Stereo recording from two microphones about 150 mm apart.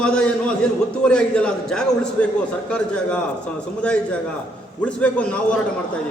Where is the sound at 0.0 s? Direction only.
5° left (ahead or behind).